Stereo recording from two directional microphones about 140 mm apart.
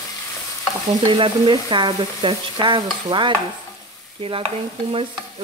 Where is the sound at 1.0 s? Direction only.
40° right (ahead or behind).